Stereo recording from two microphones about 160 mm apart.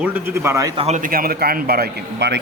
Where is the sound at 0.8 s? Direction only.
40° right (ahead or behind).